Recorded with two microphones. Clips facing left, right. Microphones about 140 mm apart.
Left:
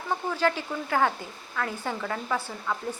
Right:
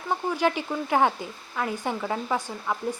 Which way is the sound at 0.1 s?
15° right (ahead or behind).